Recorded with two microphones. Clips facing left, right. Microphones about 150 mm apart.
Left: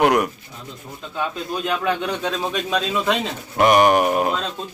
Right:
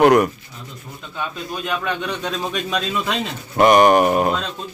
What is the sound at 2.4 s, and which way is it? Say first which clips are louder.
Speech: left 1 dB; 20° left (ahead or behind).